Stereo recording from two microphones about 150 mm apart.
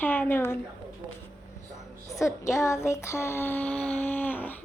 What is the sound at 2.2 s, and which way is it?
Speech, 20° left (ahead or behind).